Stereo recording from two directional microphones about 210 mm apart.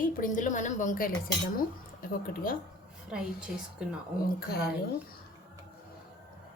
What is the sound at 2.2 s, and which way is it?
Speech, 45° left (ahead or behind).